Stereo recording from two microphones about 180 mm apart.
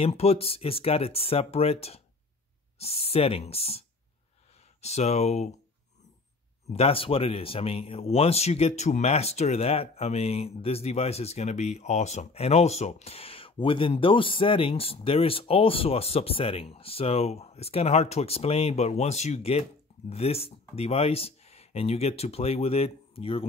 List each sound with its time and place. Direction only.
0.0 s speech: 35° left (ahead or behind)
4.8 s speech: 35° left (ahead or behind)
6.7 s speech: 30° left (ahead or behind)